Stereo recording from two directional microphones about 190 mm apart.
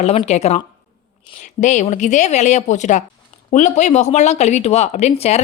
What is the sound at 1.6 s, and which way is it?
Speech, 40° left (ahead or behind).